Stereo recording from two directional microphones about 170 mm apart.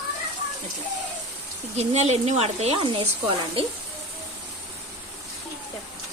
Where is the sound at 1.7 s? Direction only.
40° right (ahead or behind).